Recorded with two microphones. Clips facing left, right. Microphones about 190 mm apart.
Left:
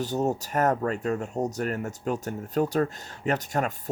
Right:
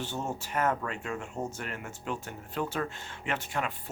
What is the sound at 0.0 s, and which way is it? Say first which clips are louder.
Speech: left 9 dB; 40° left (ahead or behind).